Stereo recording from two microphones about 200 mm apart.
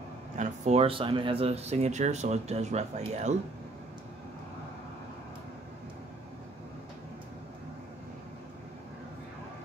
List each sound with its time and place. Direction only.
0.4 s speech: 30° right (ahead or behind)